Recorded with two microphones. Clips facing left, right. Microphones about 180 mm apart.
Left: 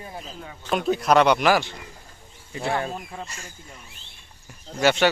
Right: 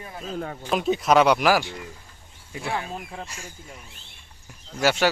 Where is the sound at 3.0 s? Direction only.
5° right (ahead or behind).